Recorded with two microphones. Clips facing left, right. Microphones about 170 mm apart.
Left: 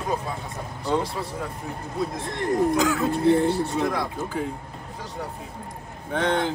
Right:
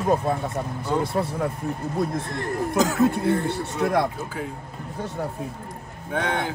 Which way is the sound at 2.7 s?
40° right (ahead or behind).